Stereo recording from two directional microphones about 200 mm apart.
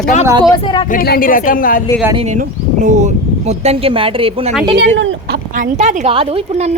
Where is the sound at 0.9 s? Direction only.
45° left (ahead or behind).